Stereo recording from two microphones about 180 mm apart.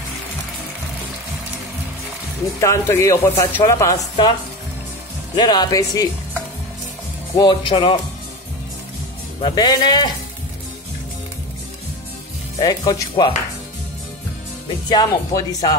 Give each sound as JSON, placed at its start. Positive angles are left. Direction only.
{"t": 2.6, "sound": "speech", "side_deg": 15}
{"t": 5.3, "sound": "speech", "side_deg": 25}
{"t": 7.3, "sound": "speech", "side_deg": 25}
{"t": 9.4, "sound": "speech", "side_deg": 25}
{"t": 12.5, "sound": "speech", "side_deg": 25}
{"t": 14.9, "sound": "speech", "side_deg": 20}